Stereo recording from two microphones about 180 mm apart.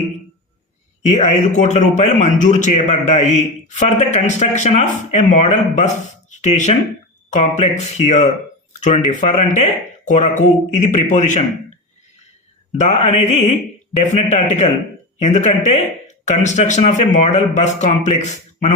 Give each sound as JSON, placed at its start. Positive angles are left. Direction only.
{"t": 1.0, "sound": "speech", "side_deg": 40}
{"t": 12.8, "sound": "speech", "side_deg": 35}